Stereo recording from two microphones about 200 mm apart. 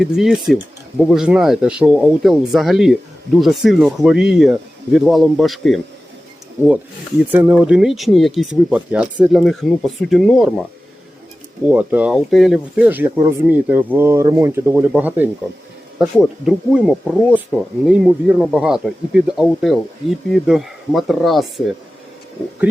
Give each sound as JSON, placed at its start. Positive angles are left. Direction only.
{"t": 0.0, "sound": "speech", "side_deg": 0}
{"t": 7.3, "sound": "speech", "side_deg": -10}
{"t": 11.6, "sound": "speech", "side_deg": -10}